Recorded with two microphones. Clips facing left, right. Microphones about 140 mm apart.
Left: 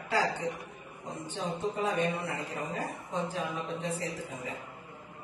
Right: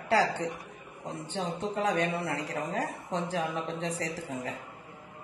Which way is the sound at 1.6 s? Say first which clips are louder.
Right 1 dB; 75° right (ahead or behind).